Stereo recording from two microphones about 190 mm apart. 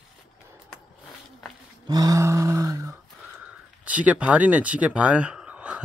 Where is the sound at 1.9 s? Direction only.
20° right (ahead or behind).